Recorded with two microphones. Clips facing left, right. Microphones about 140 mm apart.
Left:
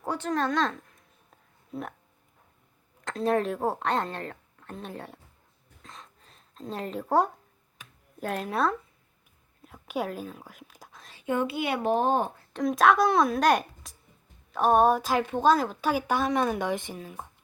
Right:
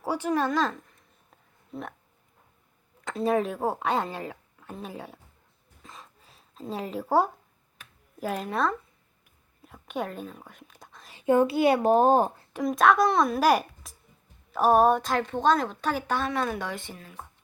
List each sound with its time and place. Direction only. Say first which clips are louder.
0.0 s a woman's voice: right 2 dB; 10° right (ahead or behind)
3.0 s speech: right 1 dB; 5° right (ahead or behind)
5.8 s a sound: even; 5° right (ahead or behind)
8.2 s a woman's voice: even; centre (ahead or behind)
11.3 s a child's voice: right 7 dB; 35° right (ahead or behind)
12.5 s a woman's voice: even; centre (ahead or behind); by 17.2 s 15° left (ahead or behind)